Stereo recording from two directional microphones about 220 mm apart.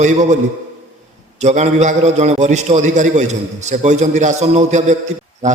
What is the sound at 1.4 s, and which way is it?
A man's voice, 30° right (ahead or behind).